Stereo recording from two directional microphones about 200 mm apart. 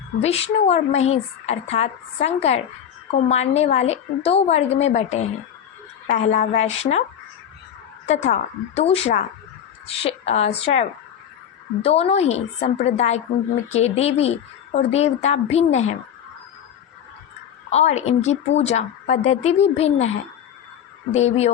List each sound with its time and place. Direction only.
0.2 s a woman's voice: 30° left (ahead or behind)
6.1 s a woman's voice: 35° left (ahead or behind)
8.0 s a woman's voice: 35° left (ahead or behind)
17.7 s a woman's voice: 35° left (ahead or behind)
21.1 s a woman's voice: 35° left (ahead or behind)